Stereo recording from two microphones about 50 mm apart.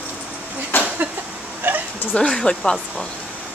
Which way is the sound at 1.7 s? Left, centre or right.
Right.